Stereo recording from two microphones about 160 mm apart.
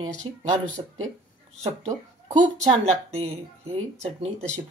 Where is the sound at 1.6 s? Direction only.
45° right (ahead or behind).